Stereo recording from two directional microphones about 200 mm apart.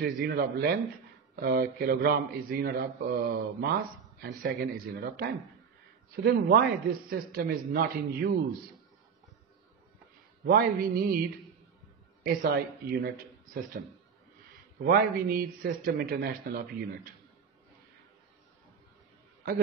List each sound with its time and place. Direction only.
0.0 s a man's voice: 50° right (ahead or behind)
10.4 s a man's voice: 50° right (ahead or behind)
12.3 s a man's voice: 50° right (ahead or behind)
14.8 s a man's voice: 50° right (ahead or behind)